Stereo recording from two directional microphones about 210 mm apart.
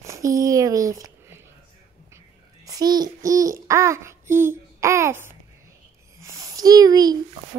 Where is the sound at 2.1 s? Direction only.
15° right (ahead or behind).